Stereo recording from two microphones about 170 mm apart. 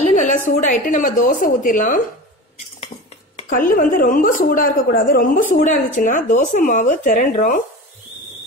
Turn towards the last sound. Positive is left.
turn(degrees=50)  # may be behind; listen again after turning